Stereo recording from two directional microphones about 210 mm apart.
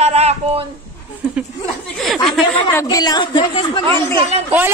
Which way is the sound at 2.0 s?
Centre (ahead or behind).